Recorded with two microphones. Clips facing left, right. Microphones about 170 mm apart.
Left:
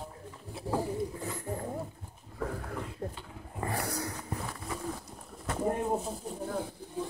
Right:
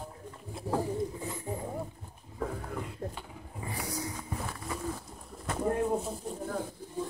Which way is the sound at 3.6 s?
65° left (ahead or behind).